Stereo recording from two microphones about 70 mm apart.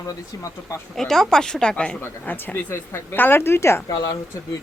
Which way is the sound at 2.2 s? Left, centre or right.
Left.